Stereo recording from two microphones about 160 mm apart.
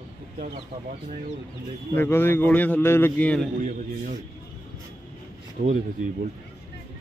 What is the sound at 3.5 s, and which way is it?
Speech, 55° right (ahead or behind).